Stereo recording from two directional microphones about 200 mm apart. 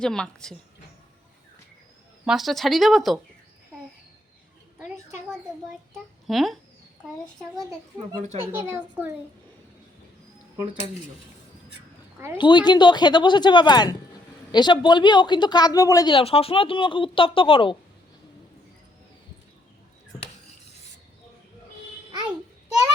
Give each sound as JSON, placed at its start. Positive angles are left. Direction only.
{"t": 0.0, "sound": "speech", "side_deg": 5}
{"t": 2.2, "sound": "speech", "side_deg": 0}
{"t": 6.2, "sound": "speech", "side_deg": 0}
{"t": 8.6, "sound": "a child's voice", "side_deg": -10}
{"t": 12.4, "sound": "speech", "side_deg": 25}